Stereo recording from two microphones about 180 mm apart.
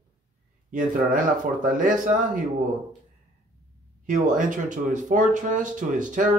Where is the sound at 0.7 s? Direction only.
45° right (ahead or behind).